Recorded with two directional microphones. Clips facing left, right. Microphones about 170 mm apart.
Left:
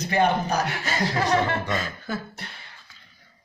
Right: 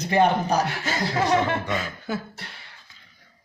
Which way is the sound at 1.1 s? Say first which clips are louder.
Right 2 dB; 15° right (ahead or behind).